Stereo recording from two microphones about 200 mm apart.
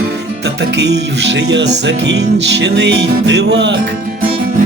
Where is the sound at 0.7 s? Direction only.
60° right (ahead or behind).